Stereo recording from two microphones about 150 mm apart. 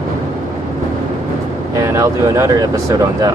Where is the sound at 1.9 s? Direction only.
20° right (ahead or behind).